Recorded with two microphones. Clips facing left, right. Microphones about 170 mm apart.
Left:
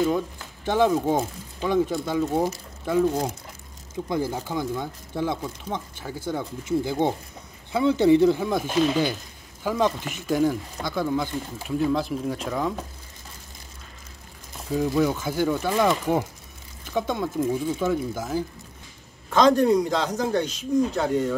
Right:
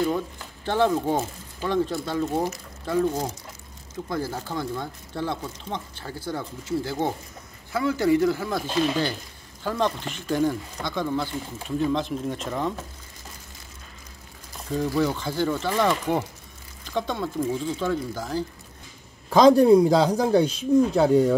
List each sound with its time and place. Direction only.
0.7 s speech: 15° left (ahead or behind)
14.9 s speech: 10° left (ahead or behind)
19.5 s speech: 30° right (ahead or behind)